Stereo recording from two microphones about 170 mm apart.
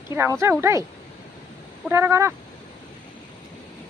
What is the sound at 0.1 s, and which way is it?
Speech, 15° right (ahead or behind).